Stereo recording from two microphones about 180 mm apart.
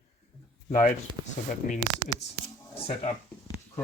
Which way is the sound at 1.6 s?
50° left (ahead or behind).